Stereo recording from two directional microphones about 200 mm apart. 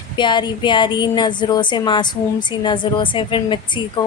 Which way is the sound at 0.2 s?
25° left (ahead or behind).